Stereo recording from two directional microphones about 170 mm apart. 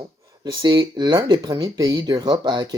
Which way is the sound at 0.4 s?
25° right (ahead or behind).